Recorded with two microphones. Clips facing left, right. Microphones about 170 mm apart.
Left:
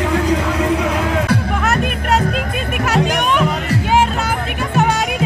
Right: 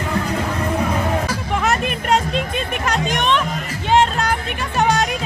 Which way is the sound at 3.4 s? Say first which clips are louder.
Left 8 dB; 70° left (ahead or behind).